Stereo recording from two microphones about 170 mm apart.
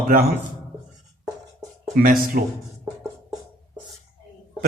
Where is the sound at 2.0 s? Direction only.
55° right (ahead or behind).